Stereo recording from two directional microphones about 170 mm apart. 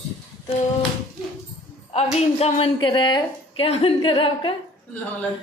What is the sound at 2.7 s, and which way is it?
Speech, 25° left (ahead or behind).